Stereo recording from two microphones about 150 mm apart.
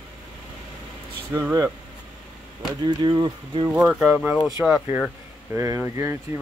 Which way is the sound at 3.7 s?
5° right (ahead or behind).